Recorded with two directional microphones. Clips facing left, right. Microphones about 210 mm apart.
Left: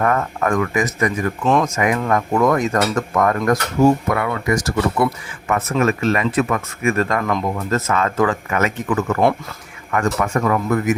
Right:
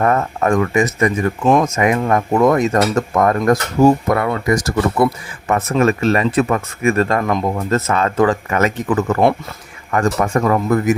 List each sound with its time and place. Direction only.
0.0 s speech: 25° right (ahead or behind)